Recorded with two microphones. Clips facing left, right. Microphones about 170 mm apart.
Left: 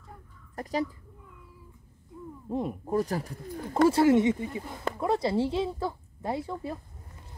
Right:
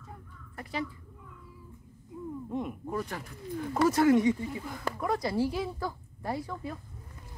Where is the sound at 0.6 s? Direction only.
40° left (ahead or behind).